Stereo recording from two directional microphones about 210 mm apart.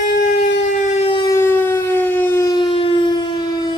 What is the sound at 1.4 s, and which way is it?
Civil defense siren, 10° left (ahead or behind).